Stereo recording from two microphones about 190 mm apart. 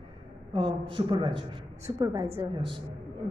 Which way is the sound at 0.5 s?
25° right (ahead or behind).